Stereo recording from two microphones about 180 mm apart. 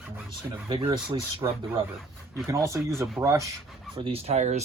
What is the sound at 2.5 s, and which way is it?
Speech, 15° right (ahead or behind).